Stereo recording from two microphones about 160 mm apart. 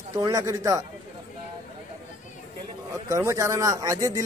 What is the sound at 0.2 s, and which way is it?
Speech, 20° right (ahead or behind).